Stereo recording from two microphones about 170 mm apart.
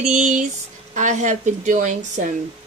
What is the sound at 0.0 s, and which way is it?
Speech, 45° right (ahead or behind).